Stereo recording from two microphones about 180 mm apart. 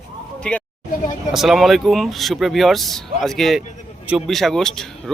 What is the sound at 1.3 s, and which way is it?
Speech, centre (ahead or behind).